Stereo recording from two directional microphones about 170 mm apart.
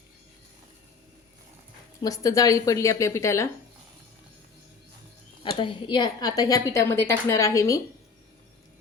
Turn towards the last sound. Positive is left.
turn(degrees=20)  # may be behind; listen again after turning